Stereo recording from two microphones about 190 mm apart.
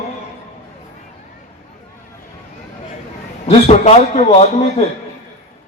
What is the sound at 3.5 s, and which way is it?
Speech, 35° left (ahead or behind).